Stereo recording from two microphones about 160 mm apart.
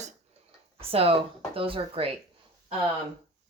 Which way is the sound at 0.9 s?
35° right (ahead or behind).